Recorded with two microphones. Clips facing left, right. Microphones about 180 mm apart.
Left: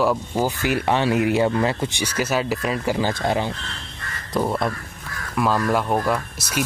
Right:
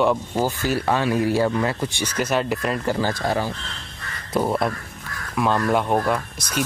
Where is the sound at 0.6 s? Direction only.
20° left (ahead or behind).